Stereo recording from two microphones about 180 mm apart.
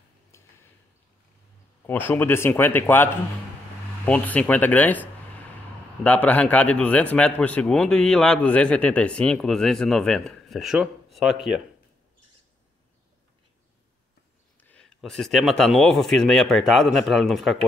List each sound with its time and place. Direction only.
0.3 s a sound: 15° left (ahead or behind)
1.9 s a man's voice: 10° left (ahead or behind)
14.6 s a man's voice: 5° left (ahead or behind)